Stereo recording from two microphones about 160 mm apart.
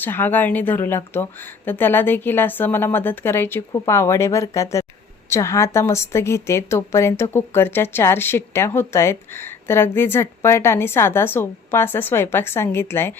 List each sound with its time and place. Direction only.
0.0 s a woman's voice: 10° left (ahead or behind)